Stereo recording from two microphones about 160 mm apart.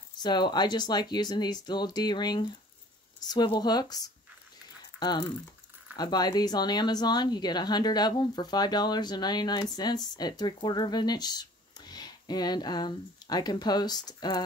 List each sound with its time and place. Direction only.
0.2 s a woman's voice: 25° left (ahead or behind)
4.9 s typing: 25° left (ahead or behind)
5.9 s a woman's voice: 25° left (ahead or behind)